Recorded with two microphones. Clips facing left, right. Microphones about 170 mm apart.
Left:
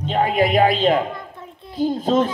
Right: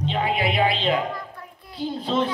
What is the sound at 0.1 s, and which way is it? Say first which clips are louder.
A man's voice: left 8 dB; 45° left (ahead or behind).